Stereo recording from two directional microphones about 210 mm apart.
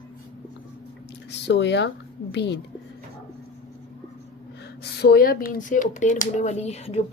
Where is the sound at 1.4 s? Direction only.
55° left (ahead or behind).